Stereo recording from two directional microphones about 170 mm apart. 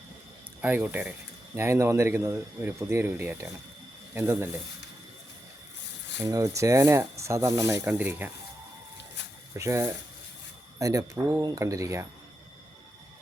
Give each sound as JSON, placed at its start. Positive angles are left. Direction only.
{"t": 0.6, "sound": "speech", "side_deg": -10}
{"t": 6.2, "sound": "speech", "side_deg": -20}
{"t": 9.6, "sound": "speech", "side_deg": -15}